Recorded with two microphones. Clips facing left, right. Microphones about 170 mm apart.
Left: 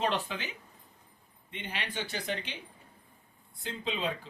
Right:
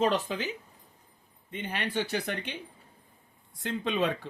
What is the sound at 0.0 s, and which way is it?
Speech, 40° right (ahead or behind).